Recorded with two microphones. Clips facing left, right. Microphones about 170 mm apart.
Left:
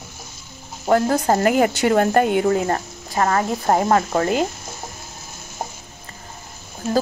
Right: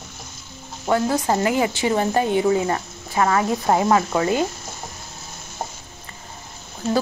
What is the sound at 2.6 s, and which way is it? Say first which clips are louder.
A woman's voice: left 1 dB; 45° left (ahead or behind).